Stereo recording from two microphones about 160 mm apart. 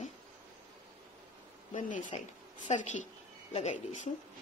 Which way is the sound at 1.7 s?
55° left (ahead or behind).